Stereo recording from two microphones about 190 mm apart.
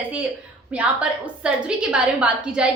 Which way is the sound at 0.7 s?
5° right (ahead or behind).